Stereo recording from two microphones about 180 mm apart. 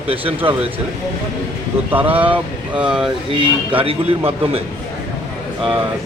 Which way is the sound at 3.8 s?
30° right (ahead or behind).